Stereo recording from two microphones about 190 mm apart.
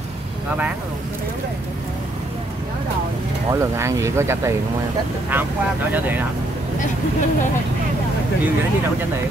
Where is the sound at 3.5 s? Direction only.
15° right (ahead or behind).